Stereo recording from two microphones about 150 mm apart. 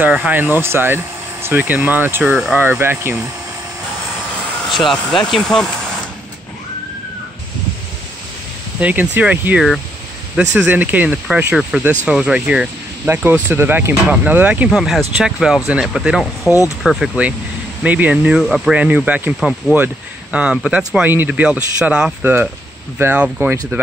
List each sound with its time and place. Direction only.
0.0 s speech: 10° right (ahead or behind)
2.3 s speech: 5° right (ahead or behind)
2.6 s speech: 15° right (ahead or behind)
4.6 s speech: centre (ahead or behind)
8.7 s speech: 10° right (ahead or behind)
16.4 s speech: 20° left (ahead or behind)
16.8 s speech: centre (ahead or behind)